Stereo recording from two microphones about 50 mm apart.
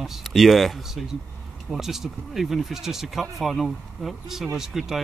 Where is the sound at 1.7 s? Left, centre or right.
Centre.